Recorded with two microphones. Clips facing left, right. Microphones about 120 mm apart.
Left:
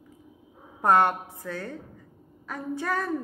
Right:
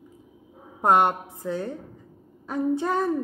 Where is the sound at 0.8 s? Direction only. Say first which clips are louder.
Right 1 dB; 20° right (ahead or behind).